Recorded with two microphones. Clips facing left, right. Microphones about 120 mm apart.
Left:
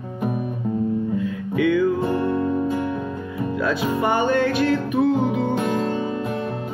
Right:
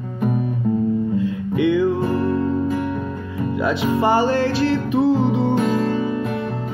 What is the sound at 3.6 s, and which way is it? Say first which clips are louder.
Music: right 3 dB; 25° right (ahead or behind).